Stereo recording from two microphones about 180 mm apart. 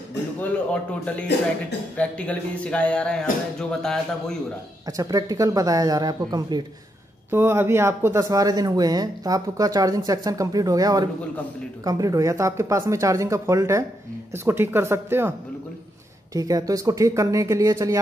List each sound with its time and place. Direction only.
2.0 s speech: 5° left (ahead or behind)
4.8 s speech: 20° right (ahead or behind)
16.3 s speech: 20° right (ahead or behind)